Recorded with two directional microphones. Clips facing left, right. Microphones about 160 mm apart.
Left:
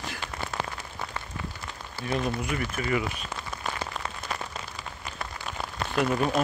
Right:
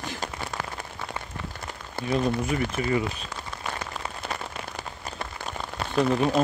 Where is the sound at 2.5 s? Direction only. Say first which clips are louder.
Right 3 dB; 30° right (ahead or behind).